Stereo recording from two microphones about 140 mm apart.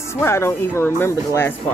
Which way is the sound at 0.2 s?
20° left (ahead or behind).